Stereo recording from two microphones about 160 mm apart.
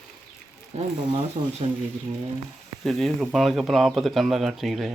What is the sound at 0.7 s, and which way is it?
Speech, 45° right (ahead or behind).